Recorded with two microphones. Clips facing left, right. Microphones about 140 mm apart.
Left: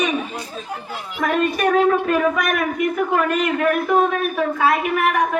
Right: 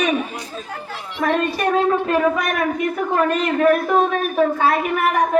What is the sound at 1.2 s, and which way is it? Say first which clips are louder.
A woman's voice: even; 30° right (ahead or behind).